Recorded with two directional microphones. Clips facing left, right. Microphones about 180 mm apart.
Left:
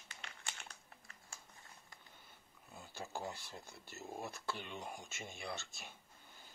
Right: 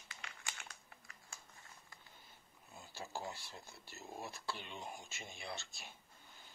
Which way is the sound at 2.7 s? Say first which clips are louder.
Left 1 dB; 50° left (ahead or behind).